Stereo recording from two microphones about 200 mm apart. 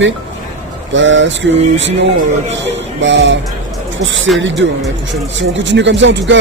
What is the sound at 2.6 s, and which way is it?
Music, 65° right (ahead or behind).